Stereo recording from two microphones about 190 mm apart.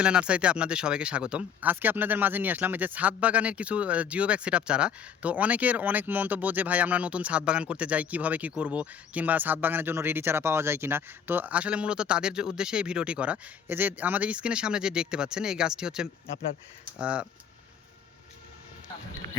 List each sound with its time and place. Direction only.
0.0 s speech: 5° right (ahead or behind)